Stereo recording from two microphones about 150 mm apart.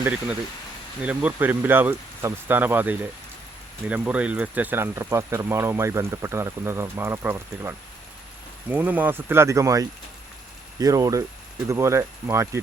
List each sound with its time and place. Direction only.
1.0 s speech: 10° right (ahead or behind)